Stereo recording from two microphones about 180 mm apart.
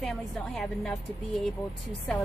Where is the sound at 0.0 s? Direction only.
5° left (ahead or behind).